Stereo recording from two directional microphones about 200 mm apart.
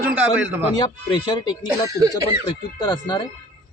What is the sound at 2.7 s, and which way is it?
Speech, 20° left (ahead or behind).